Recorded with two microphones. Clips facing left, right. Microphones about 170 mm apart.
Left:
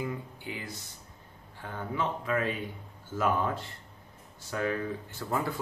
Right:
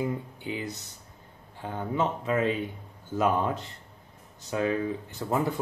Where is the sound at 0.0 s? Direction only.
20° right (ahead or behind).